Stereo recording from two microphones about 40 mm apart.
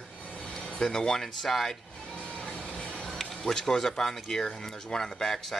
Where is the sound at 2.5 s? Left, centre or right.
Left.